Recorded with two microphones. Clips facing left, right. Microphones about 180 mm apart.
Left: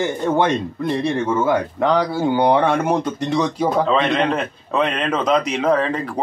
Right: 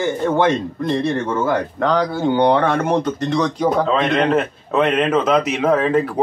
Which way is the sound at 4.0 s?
Centre (ahead or behind).